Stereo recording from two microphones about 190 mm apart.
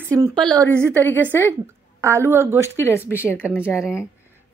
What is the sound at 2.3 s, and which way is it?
Speech, 15° right (ahead or behind).